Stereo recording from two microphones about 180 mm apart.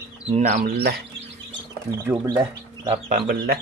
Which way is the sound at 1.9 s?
15° right (ahead or behind).